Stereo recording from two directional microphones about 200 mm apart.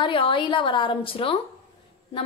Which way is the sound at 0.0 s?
25° left (ahead or behind).